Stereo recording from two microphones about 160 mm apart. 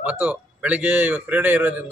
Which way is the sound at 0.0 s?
10° right (ahead or behind).